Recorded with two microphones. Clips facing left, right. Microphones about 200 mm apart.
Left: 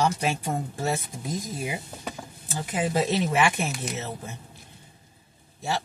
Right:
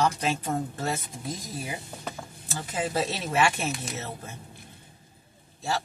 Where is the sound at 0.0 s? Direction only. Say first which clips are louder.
Left 1 dB; 15° left (ahead or behind).